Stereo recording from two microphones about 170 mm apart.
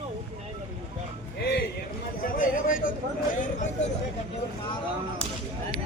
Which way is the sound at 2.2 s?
55° left (ahead or behind).